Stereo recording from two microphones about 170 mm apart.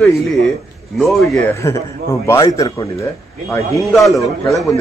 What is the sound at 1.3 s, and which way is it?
A man's voice, 15° left (ahead or behind).